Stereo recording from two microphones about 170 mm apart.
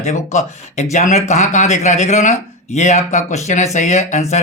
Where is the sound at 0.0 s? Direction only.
45° left (ahead or behind).